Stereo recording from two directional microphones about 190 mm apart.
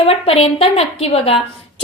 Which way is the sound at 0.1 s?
30° left (ahead or behind).